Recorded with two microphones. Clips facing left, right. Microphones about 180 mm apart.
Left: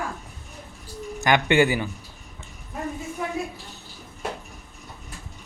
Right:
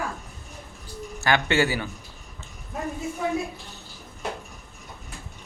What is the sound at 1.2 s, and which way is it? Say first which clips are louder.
Speech: left 3 dB; 15° left (ahead or behind).